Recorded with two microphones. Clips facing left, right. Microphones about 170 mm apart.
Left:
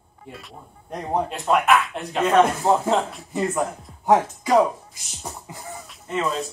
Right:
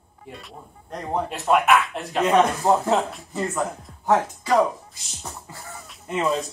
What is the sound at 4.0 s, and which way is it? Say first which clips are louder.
Speech: left 2 dB; 15° left (ahead or behind).